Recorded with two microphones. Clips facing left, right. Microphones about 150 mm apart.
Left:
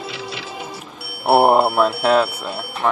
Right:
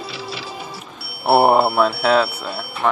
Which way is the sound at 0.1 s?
20° left (ahead or behind).